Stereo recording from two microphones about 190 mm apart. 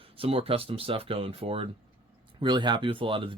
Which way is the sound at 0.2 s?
30° right (ahead or behind).